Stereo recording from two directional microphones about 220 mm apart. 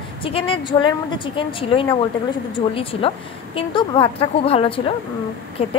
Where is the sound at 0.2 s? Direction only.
25° left (ahead or behind).